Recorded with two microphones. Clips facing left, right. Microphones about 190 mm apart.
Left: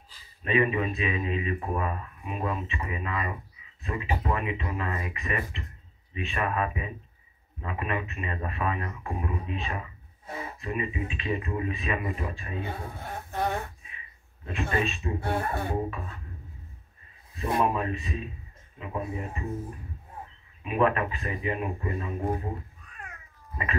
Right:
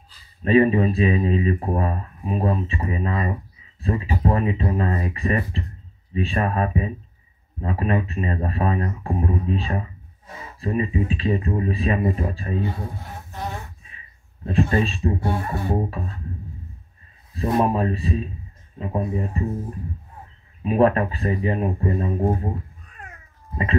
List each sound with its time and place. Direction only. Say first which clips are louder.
0.4 s speech: right 9 dB; 35° right (ahead or behind)
13.0 s a sound: left 3 dB; 55° left (ahead or behind)
14.4 s speech: right 8 dB; 35° right (ahead or behind)
15.1 s speech: right 3 dB; 55° left (ahead or behind)
17.4 s speech: right 6 dB; 35° right (ahead or behind)
20.6 s speech: right 7 dB; 35° right (ahead or behind)